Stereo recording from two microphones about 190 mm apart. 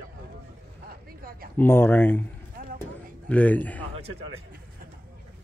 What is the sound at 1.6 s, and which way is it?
Speech, 10° left (ahead or behind).